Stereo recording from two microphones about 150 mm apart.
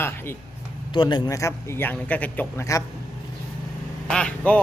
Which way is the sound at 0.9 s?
30° left (ahead or behind).